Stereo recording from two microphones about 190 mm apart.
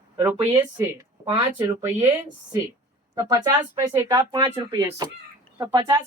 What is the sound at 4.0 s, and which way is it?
Speech, 15° right (ahead or behind).